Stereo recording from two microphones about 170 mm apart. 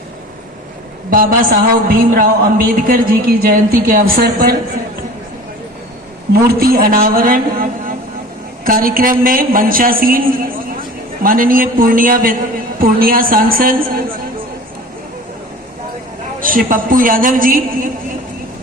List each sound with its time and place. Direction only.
1.1 s a man's voice: 55° right (ahead or behind)
6.5 s a man's voice: 60° right (ahead or behind)
16.4 s a man's voice: 55° right (ahead or behind)